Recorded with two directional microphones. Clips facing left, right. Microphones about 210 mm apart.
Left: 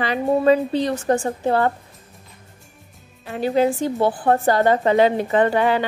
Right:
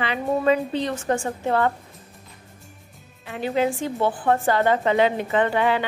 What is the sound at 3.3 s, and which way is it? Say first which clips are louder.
A woman's voice: left 4 dB; 35° left (ahead or behind).